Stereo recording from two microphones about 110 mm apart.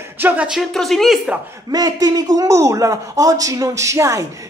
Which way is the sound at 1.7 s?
35° right (ahead or behind).